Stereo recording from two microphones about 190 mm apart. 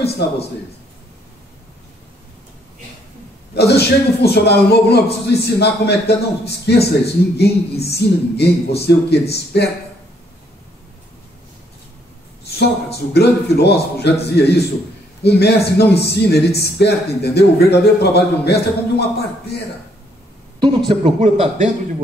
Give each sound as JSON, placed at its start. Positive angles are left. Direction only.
{"t": 3.5, "sound": "a man's voice", "side_deg": 60}
{"t": 12.4, "sound": "a man's voice", "side_deg": 60}
{"t": 20.9, "sound": "a man's voice", "side_deg": -30}